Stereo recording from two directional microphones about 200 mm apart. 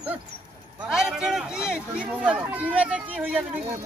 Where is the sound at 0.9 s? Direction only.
Centre (ahead or behind).